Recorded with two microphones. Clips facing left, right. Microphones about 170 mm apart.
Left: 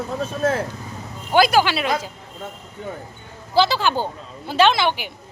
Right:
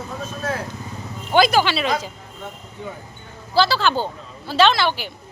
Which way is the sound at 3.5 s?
20° left (ahead or behind).